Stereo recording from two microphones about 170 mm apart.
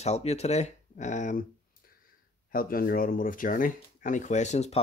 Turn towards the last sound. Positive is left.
turn(degrees=40)  # may be behind; listen again after turning